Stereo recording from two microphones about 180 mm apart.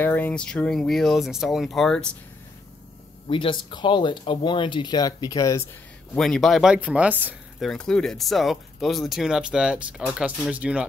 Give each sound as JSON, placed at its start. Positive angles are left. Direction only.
{"t": 0.0, "sound": "speech", "side_deg": 10}
{"t": 3.3, "sound": "speech", "side_deg": 30}
{"t": 6.1, "sound": "speech", "side_deg": 5}
{"t": 7.6, "sound": "speech", "side_deg": 5}